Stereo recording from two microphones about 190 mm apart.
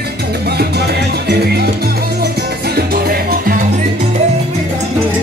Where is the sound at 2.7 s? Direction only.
50° right (ahead or behind).